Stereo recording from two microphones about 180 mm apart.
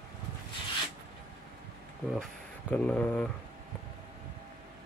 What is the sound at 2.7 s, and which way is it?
Speech, 5° left (ahead or behind).